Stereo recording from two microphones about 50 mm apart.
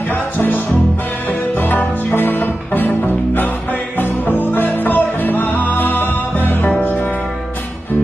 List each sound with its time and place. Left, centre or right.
0.1 s music: left